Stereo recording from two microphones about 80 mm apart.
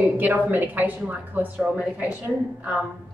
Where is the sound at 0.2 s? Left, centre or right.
Right.